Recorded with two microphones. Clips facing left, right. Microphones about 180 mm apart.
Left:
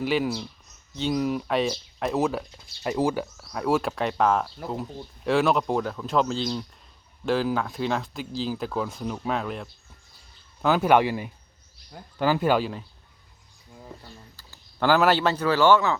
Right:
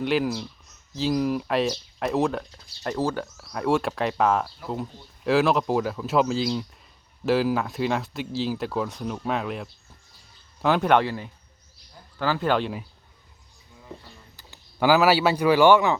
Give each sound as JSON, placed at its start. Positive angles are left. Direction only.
{"t": 0.0, "sound": "speech", "side_deg": 0}
{"t": 3.4, "sound": "speech", "side_deg": 0}
{"t": 14.3, "sound": "a sound", "side_deg": -20}
{"t": 14.8, "sound": "speech", "side_deg": -5}